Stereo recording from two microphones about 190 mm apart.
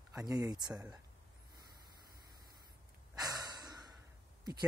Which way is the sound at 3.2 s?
20° right (ahead or behind).